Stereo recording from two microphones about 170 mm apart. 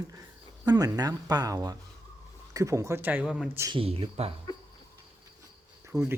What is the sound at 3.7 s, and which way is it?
Speech, 35° right (ahead or behind).